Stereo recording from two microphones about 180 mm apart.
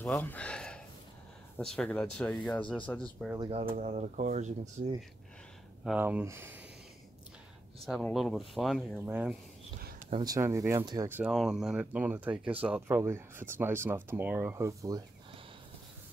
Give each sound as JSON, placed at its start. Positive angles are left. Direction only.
{"t": 0.0, "sound": "speech", "side_deg": 10}
{"t": 3.3, "sound": "speech", "side_deg": -30}
{"t": 3.7, "sound": "speech", "side_deg": -40}
{"t": 5.9, "sound": "speech", "side_deg": -10}
{"t": 7.8, "sound": "speech", "side_deg": 0}
{"t": 9.0, "sound": "speech", "side_deg": -10}